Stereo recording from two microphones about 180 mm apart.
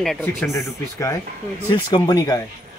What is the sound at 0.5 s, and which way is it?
Speech, 15° left (ahead or behind).